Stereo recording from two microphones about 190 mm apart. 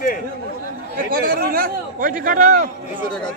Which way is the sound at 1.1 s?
50° right (ahead or behind).